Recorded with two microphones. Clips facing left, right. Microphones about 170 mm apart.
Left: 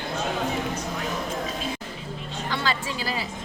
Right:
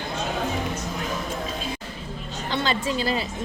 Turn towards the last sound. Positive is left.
turn(degrees=-25)  # may be behind; listen again after turning